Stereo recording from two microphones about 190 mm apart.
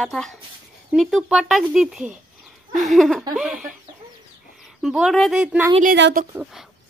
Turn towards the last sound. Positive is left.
turn(degrees=-55)  # may be behind; listen again after turning